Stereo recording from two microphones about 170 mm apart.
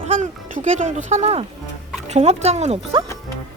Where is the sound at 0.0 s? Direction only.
40° right (ahead or behind).